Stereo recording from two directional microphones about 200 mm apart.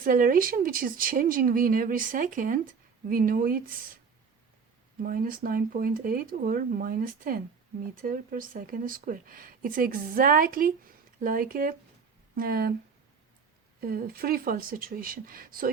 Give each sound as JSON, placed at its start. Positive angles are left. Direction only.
{"t": 0.0, "sound": "speech", "side_deg": -45}
{"t": 5.0, "sound": "speech", "side_deg": -45}
{"t": 13.8, "sound": "speech", "side_deg": -50}